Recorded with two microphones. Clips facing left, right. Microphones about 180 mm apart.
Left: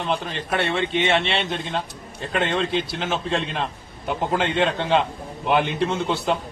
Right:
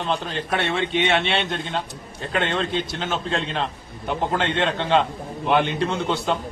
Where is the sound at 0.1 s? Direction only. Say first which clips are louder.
Right 1 dB; centre (ahead or behind).